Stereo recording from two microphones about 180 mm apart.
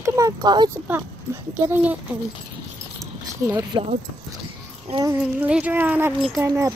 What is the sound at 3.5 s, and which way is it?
Speech, 25° right (ahead or behind).